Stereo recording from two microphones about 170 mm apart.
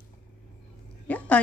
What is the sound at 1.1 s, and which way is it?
Speech, 10° left (ahead or behind).